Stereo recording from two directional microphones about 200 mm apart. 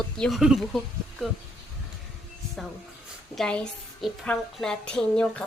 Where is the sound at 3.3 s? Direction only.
Centre (ahead or behind).